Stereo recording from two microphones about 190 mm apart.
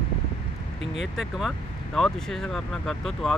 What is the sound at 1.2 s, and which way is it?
Speech, centre (ahead or behind).